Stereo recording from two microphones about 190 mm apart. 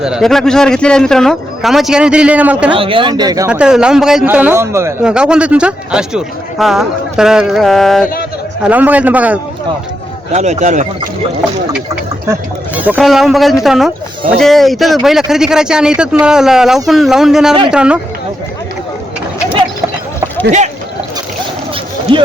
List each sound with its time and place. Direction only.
0.0 s speech: centre (ahead or behind)
2.7 s speech: 30° right (ahead or behind)
3.5 s a man's voice: 5° right (ahead or behind)
10.3 s speech: 35° right (ahead or behind)
12.3 s speech: 10° right (ahead or behind)
22.1 s speech: 25° right (ahead or behind)